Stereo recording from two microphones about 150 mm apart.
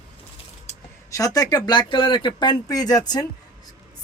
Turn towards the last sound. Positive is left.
turn(degrees=25)  # may be behind; listen again after turning